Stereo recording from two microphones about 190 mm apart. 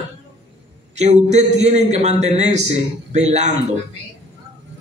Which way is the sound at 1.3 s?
35° right (ahead or behind).